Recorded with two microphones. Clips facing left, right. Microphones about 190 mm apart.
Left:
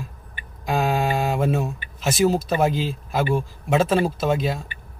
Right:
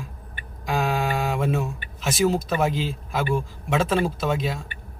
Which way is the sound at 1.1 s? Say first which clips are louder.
Left 2 dB; centre (ahead or behind).